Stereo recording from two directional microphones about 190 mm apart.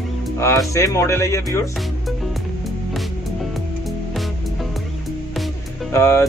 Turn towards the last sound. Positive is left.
turn(degrees=15)  # may be behind; listen again after turning